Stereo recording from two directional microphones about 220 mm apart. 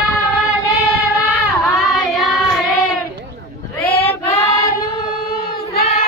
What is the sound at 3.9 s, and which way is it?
Child singing, 25° left (ahead or behind).